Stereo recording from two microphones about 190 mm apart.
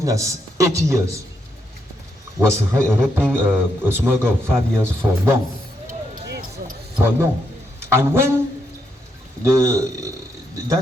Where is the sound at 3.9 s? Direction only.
10° right (ahead or behind).